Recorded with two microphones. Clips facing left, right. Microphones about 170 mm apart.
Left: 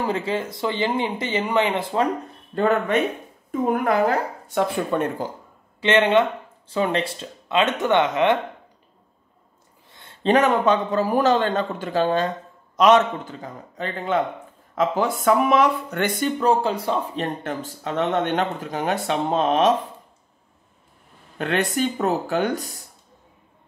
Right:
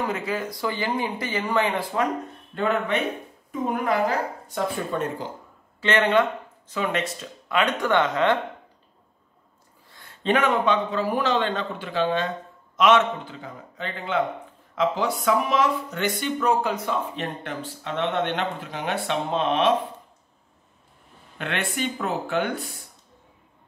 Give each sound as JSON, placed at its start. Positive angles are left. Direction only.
{"t": 0.0, "sound": "speech", "side_deg": 30}
{"t": 2.5, "sound": "a man's voice", "side_deg": 40}
{"t": 4.9, "sound": "speech", "side_deg": 65}
{"t": 5.8, "sound": "speech", "side_deg": 20}
{"t": 9.8, "sound": "a sound", "side_deg": 20}
{"t": 10.2, "sound": "a man's voice", "side_deg": 40}
{"t": 16.3, "sound": "speech", "side_deg": 30}
{"t": 21.4, "sound": "a man's voice", "side_deg": 40}